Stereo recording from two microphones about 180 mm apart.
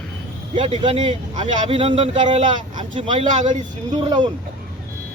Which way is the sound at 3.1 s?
40° right (ahead or behind).